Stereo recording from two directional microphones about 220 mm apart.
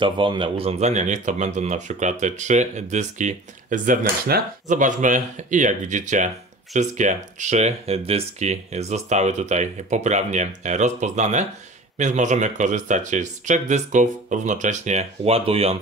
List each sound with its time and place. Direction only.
0.0 s speech: 20° right (ahead or behind)